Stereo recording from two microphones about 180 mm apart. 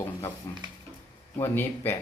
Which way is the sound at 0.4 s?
20° left (ahead or behind).